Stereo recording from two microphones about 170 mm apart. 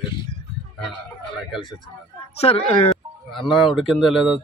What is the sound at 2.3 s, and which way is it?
Speech, 35° left (ahead or behind).